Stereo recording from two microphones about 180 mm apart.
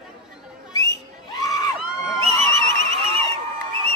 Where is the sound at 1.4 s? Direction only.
20° left (ahead or behind).